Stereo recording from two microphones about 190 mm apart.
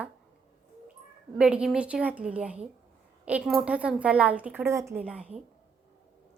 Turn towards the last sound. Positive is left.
turn(degrees=-5)  # may be behind; listen again after turning